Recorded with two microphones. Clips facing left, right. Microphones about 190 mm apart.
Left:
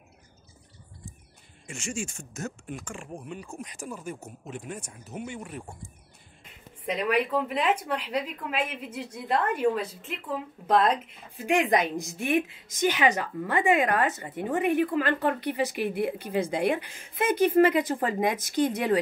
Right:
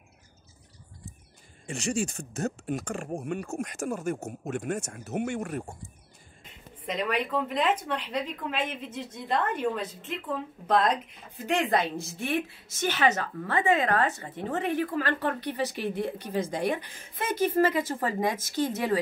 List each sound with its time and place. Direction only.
1.7 s speech: 35° right (ahead or behind)
4.7 s speech: 75° right (ahead or behind)
5.2 s speech: 50° right (ahead or behind)
7.0 s speech: 10° left (ahead or behind)